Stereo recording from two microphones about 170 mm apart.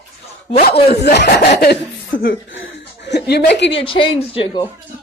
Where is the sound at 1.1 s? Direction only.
75° left (ahead or behind); by 3.7 s 90° left.